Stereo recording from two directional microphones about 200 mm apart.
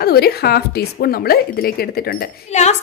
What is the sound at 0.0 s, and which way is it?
A woman's voice, 50° left (ahead or behind).